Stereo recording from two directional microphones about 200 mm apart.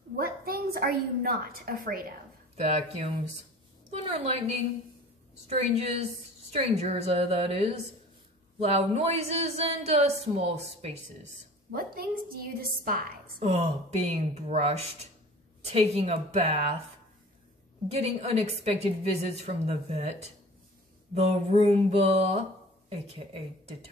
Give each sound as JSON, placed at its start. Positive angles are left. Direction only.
{"t": 0.2, "sound": "a woman's voice", "side_deg": -50}
{"t": 2.5, "sound": "a woman's voice", "side_deg": -30}
{"t": 5.5, "sound": "speech", "side_deg": -30}
{"t": 11.7, "sound": "a woman's voice", "side_deg": -50}
{"t": 13.4, "sound": "speech", "side_deg": -30}
{"t": 17.9, "sound": "a woman's voice", "side_deg": -30}